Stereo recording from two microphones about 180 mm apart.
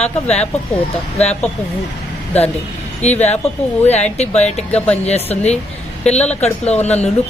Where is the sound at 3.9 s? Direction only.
35° left (ahead or behind).